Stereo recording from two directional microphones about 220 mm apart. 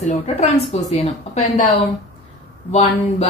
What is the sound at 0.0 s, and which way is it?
A woman's voice, 30° left (ahead or behind).